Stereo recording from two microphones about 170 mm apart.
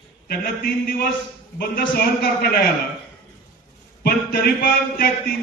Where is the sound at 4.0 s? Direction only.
60° left (ahead or behind).